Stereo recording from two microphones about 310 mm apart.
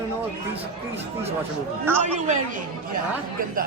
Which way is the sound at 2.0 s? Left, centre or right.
Right.